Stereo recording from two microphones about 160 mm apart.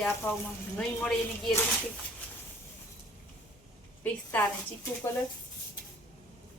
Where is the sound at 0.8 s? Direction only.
5° left (ahead or behind).